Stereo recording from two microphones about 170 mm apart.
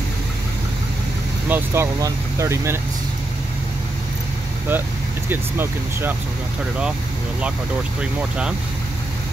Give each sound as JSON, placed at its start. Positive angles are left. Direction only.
{"t": 1.5, "sound": "speech", "side_deg": -15}
{"t": 5.3, "sound": "speech", "side_deg": -10}
{"t": 8.0, "sound": "speech", "side_deg": -5}